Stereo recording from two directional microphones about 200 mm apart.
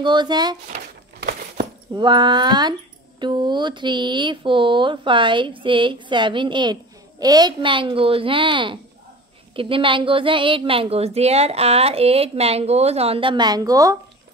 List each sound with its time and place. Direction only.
0.0 s speech: 20° right (ahead or behind)
0.7 s a sound: 50° right (ahead or behind)
2.0 s speech: 20° right (ahead or behind)